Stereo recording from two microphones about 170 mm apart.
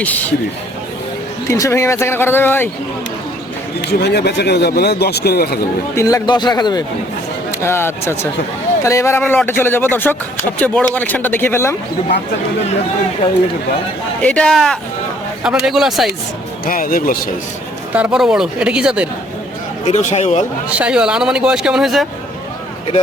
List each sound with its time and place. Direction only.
0.0 s speech: 10° left (ahead or behind)
1.5 s speech: 20° left (ahead or behind)
3.8 s speech: 75° left (ahead or behind)
6.0 s a man's voice: 20° left (ahead or behind)
14.2 s speech: 5° left (ahead or behind)
16.6 s a man's voice: 55° left (ahead or behind)
17.9 s speech: 5° right (ahead or behind)
19.8 s a man's voice: 45° left (ahead or behind)
20.7 s speech: 5° right (ahead or behind)